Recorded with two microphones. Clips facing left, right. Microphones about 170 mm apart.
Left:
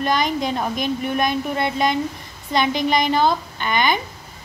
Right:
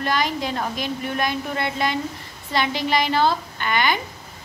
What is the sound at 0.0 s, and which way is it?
A woman's voice, 20° left (ahead or behind).